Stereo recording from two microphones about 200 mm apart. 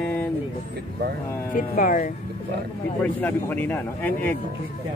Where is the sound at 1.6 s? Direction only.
40° left (ahead or behind).